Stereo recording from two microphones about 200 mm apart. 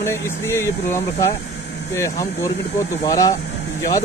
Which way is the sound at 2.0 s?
15° left (ahead or behind).